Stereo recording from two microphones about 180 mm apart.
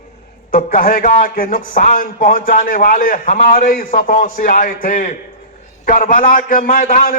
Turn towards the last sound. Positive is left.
turn(degrees=50)  # may be behind; listen again after turning